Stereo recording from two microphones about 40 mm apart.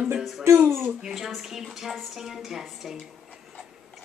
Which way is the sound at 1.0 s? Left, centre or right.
Centre.